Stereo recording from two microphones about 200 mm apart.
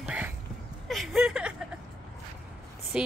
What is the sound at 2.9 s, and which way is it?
Speech, 5° right (ahead or behind).